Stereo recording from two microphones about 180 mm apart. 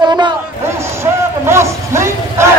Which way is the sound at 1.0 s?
15° right (ahead or behind).